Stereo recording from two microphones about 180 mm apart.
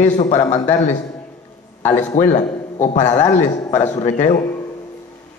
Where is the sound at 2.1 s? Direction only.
40° left (ahead or behind).